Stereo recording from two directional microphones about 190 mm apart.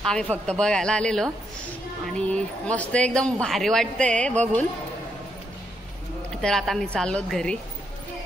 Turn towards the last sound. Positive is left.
turn(degrees=5)  # may be behind; listen again after turning